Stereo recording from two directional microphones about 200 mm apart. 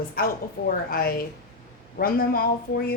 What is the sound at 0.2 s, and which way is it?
Speech, 45° left (ahead or behind).